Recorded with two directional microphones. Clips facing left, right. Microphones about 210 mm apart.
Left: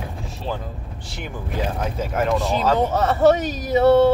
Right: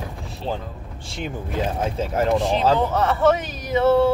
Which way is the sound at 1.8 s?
30° right (ahead or behind).